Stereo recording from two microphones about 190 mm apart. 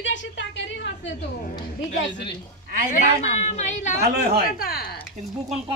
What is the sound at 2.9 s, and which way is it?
A woman's voice, 35° left (ahead or behind).